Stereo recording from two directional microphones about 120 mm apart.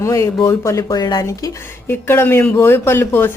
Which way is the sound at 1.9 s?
20° left (ahead or behind).